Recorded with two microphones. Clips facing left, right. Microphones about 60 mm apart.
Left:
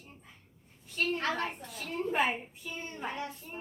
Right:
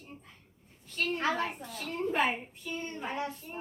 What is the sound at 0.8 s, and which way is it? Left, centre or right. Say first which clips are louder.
Speech: left 1 dB; centre.